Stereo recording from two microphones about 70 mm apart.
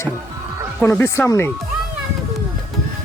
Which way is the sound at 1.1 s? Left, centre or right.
Left.